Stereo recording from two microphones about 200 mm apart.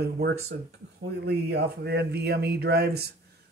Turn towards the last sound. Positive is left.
turn(degrees=-55)  # may be behind; listen again after turning